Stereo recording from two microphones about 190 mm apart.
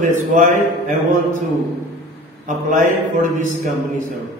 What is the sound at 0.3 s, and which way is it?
Speech, 45° right (ahead or behind).